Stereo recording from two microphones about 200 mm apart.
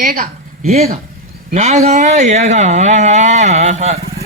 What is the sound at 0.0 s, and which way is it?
Speech, 45° right (ahead or behind).